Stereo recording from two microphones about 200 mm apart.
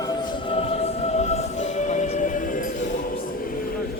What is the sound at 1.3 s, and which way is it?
Music, 35° left (ahead or behind).